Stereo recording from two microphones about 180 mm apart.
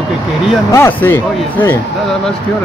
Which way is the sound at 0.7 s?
15° left (ahead or behind).